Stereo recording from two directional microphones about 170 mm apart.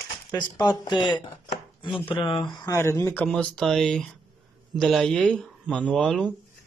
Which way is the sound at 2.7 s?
15° left (ahead or behind).